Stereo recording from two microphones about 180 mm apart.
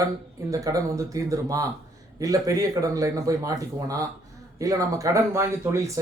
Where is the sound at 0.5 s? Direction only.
20° right (ahead or behind).